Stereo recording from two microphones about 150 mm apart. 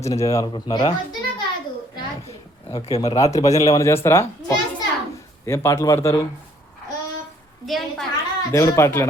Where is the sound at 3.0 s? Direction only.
25° left (ahead or behind).